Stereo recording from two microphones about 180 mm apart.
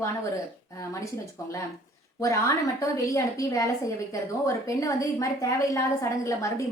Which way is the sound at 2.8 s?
15° left (ahead or behind).